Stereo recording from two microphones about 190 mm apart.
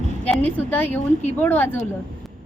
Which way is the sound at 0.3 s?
10° left (ahead or behind).